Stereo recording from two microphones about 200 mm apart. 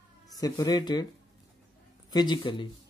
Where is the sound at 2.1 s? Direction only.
20° left (ahead or behind).